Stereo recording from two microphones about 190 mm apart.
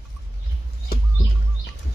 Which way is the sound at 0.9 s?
55° left (ahead or behind).